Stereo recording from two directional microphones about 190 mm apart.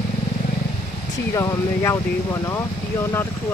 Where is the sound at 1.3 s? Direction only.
15° left (ahead or behind).